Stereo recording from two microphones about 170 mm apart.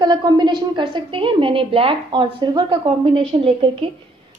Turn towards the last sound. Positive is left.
turn(degrees=-35)  # may be behind; listen again after turning